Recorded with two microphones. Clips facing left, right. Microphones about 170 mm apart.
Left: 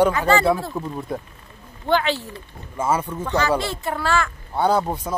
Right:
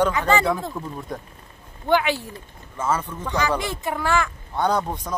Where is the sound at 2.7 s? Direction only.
10° left (ahead or behind).